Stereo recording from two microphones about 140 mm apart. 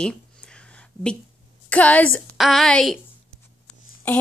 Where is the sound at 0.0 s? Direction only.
5° left (ahead or behind).